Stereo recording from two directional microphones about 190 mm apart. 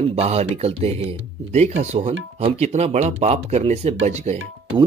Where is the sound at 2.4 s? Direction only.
30° right (ahead or behind).